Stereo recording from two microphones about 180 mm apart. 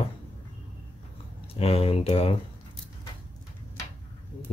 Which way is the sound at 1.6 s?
30° left (ahead or behind).